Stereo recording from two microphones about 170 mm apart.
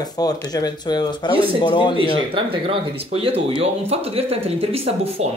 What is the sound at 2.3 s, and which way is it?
Speech, 30° right (ahead or behind).